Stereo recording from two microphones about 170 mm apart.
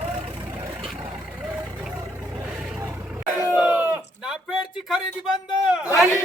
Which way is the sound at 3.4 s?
15° right (ahead or behind).